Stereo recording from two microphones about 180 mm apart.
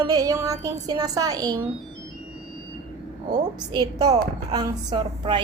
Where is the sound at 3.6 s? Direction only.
20° right (ahead or behind).